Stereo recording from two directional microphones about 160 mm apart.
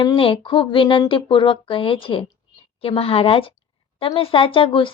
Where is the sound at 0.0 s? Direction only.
30° left (ahead or behind).